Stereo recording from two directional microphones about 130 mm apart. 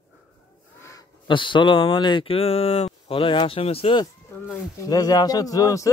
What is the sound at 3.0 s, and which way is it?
Speech, 40° left (ahead or behind).